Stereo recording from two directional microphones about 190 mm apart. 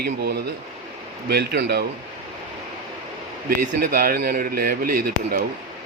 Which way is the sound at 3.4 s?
50° right (ahead or behind).